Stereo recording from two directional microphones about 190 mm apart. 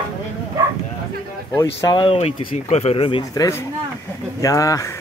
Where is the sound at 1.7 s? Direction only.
25° left (ahead or behind).